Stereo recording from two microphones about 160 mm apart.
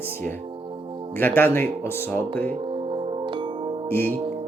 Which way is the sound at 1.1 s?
15° left (ahead or behind).